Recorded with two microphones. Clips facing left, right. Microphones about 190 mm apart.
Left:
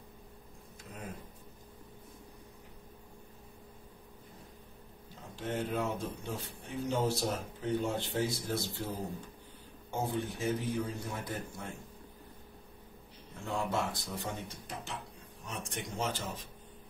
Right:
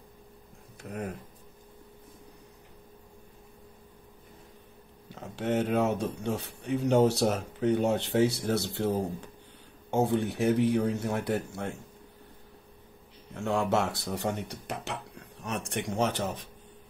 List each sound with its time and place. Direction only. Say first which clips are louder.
0.8 s speech: right 10 dB; 65° right (ahead or behind)
5.1 s speech: right 8 dB; 70° right (ahead or behind)
13.4 s speech: right 7 dB; 70° right (ahead or behind)